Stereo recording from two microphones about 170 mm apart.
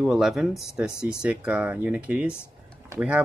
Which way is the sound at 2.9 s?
20° right (ahead or behind).